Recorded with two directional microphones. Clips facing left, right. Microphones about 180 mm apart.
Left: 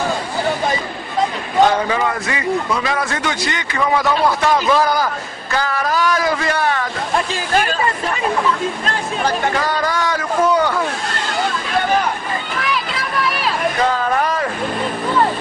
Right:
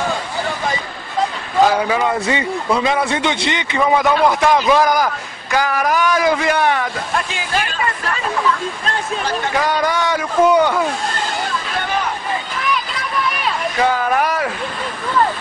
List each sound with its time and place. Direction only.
1.6 s a man's voice: 5° right (ahead or behind)
2.0 s a man's voice: 25° right (ahead or behind)
7.3 s speech: 45° left (ahead or behind)
9.8 s a man's voice: 15° right (ahead or behind)
13.7 s a man's voice: 10° right (ahead or behind)